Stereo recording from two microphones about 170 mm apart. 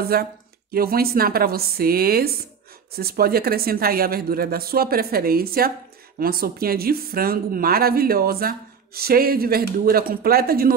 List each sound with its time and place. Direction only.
0.0 s speech: 60° right (ahead or behind)